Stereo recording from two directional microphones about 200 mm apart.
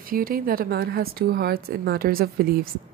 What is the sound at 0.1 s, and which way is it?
A woman's voice, 45° right (ahead or behind).